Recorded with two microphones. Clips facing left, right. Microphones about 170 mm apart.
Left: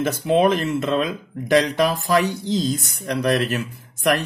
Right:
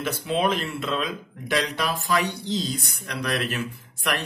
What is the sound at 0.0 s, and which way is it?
Speech, 45° left (ahead or behind).